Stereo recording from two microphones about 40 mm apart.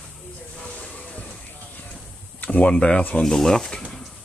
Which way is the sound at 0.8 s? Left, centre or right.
Left.